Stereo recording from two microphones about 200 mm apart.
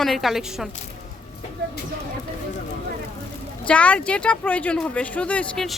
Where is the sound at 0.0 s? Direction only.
Centre (ahead or behind).